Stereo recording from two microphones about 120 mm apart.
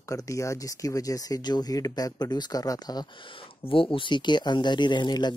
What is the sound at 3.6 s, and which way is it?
Speech, 50° left (ahead or behind).